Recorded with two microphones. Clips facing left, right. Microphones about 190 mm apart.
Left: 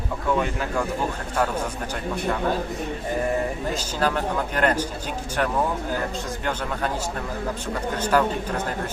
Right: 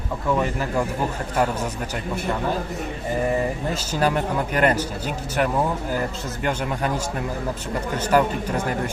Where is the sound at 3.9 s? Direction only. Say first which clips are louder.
Right 3 dB; 10° right (ahead or behind).